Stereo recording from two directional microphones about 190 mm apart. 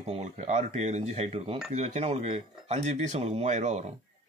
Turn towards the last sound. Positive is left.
turn(degrees=-35)  # may be behind; listen again after turning